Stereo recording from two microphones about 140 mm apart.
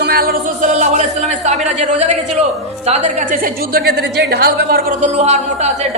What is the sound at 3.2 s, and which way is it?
A woman's voice, 90° right.